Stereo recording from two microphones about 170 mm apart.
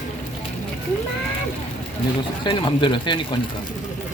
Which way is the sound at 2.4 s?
30° left (ahead or behind).